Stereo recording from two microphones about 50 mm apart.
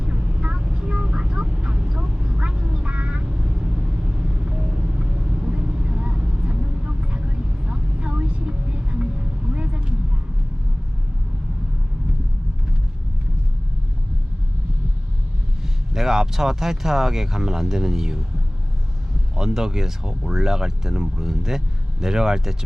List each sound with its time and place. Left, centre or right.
0.0 s vehicle: centre
15.9 s speech: centre
19.4 s speech: centre